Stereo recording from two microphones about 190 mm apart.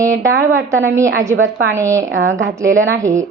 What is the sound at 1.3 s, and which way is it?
Speech, 90° right.